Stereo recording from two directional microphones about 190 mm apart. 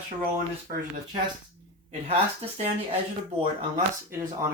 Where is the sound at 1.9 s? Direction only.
35° right (ahead or behind).